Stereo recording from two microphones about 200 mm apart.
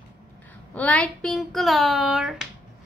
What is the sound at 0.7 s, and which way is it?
Speech, 5° left (ahead or behind).